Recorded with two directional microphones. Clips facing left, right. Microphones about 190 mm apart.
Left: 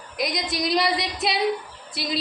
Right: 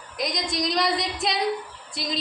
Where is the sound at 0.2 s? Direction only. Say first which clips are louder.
Left 1 dB; 5° left (ahead or behind).